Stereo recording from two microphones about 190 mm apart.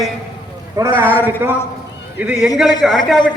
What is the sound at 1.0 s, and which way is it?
Speech, 10° left (ahead or behind).